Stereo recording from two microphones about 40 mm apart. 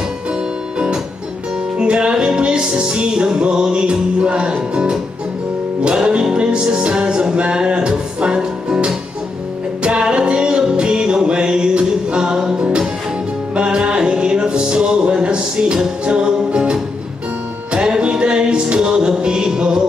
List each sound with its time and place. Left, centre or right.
1.8 s music: right
5.9 s music: right
17.7 s music: right